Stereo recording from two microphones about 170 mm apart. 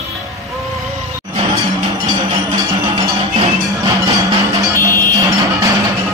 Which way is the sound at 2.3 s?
35° right (ahead or behind).